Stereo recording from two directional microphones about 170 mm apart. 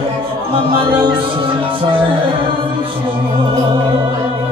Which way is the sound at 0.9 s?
30° right (ahead or behind).